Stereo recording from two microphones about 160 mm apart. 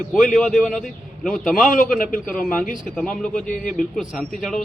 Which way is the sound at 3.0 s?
5° left (ahead or behind).